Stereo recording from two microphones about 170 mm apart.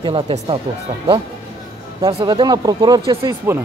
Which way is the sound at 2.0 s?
30° right (ahead or behind).